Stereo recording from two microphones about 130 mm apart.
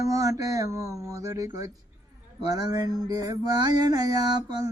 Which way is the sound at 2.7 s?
30° right (ahead or behind).